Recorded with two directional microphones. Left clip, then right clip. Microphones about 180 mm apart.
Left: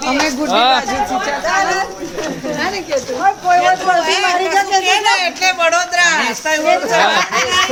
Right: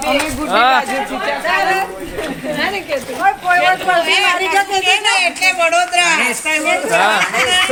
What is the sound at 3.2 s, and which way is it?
A man's voice, 15° left (ahead or behind).